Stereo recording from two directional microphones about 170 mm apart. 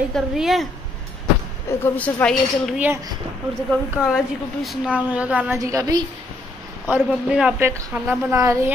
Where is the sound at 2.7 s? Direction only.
10° right (ahead or behind).